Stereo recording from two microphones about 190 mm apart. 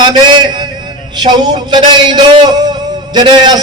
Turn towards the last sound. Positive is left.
turn(degrees=-25)  # may be behind; listen again after turning